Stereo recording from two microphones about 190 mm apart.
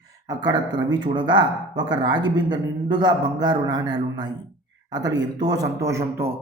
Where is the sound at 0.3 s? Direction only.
20° right (ahead or behind).